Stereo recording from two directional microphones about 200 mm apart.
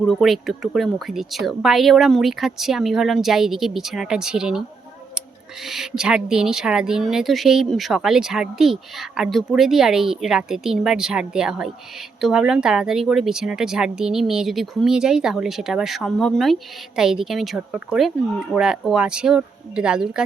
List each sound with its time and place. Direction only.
0.0 s speech: centre (ahead or behind)
5.6 s speech: centre (ahead or behind)